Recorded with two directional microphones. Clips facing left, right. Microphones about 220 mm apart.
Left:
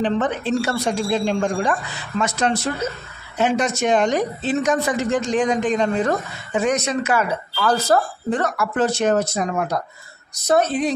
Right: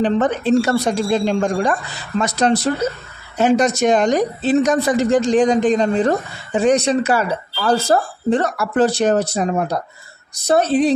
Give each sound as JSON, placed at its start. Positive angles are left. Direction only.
{"t": 0.0, "sound": "speech", "side_deg": -40}